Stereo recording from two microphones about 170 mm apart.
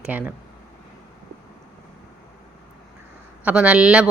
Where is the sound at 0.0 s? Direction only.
10° right (ahead or behind).